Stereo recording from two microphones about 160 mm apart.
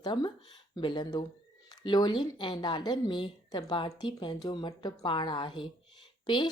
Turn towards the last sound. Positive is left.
turn(degrees=30)  # may be behind; listen again after turning